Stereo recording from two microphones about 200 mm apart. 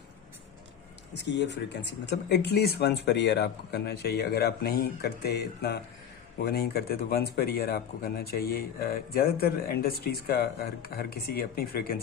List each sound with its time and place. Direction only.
1.1 s speech: 60° left (ahead or behind)